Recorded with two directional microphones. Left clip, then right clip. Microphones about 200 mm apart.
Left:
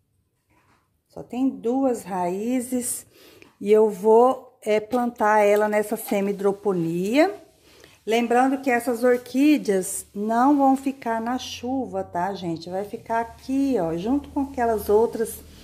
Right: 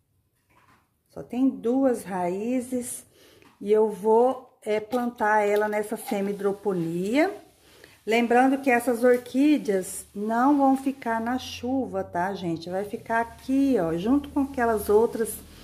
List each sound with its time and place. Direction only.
1.1 s speech: 5° left (ahead or behind); by 4.8 s 20° left (ahead or behind)
4.8 s speech: centre (ahead or behind)
5.1 s a woman's voice: 20° left (ahead or behind)